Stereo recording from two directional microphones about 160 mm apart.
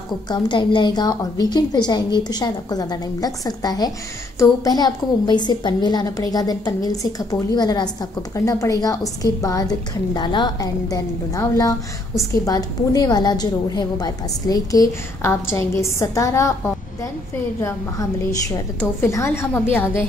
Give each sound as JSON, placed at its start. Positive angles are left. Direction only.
{"t": 0.3, "sound": "a woman's voice", "side_deg": 30}
{"t": 17.6, "sound": "a woman's voice", "side_deg": 15}